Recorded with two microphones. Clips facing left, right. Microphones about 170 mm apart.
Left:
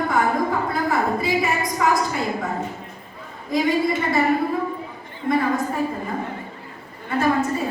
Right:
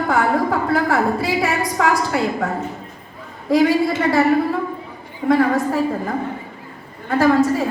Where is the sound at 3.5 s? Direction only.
80° right.